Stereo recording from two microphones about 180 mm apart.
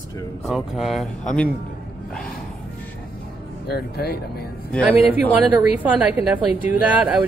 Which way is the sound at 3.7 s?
60° left (ahead or behind).